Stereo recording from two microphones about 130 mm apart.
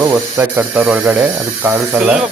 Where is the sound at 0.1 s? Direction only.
15° right (ahead or behind).